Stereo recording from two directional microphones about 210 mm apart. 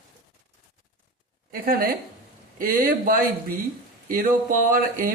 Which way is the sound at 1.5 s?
45° right (ahead or behind).